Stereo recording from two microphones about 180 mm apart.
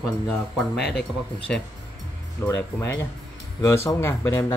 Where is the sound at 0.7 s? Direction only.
65° left (ahead or behind).